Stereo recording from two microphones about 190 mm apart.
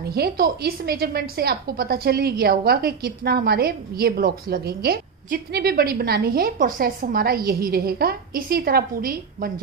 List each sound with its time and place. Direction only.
0.0 s a woman's voice: 55° right (ahead or behind)